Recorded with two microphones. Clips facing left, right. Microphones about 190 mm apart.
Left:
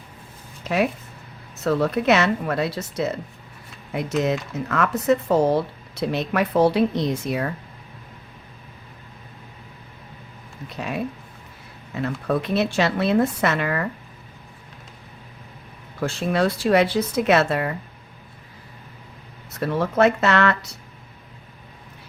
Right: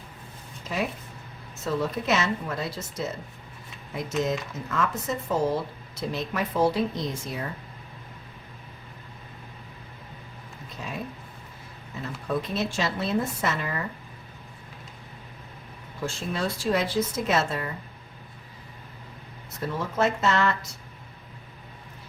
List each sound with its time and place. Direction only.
0.6 s a sound: 70° left (ahead or behind)
1.6 s speech: 70° left (ahead or behind)
10.8 s speech: 70° left (ahead or behind)
16.0 s speech: 65° left (ahead or behind)
19.5 s speech: 70° left (ahead or behind)